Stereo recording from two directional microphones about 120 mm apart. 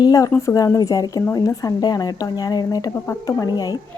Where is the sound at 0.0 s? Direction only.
30° left (ahead or behind).